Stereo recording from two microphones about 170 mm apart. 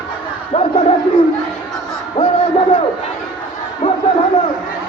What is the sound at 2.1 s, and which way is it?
Music, 35° left (ahead or behind).